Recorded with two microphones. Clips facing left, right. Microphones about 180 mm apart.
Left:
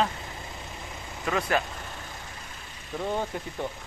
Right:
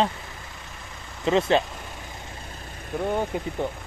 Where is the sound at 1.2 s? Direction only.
25° right (ahead or behind).